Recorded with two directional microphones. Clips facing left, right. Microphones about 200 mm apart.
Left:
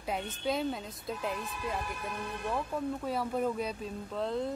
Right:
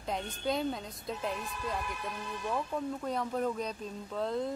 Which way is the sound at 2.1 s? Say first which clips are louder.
Left 2 dB; 55° left (ahead or behind).